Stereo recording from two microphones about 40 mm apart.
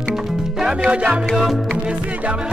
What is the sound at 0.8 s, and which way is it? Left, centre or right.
Music, right.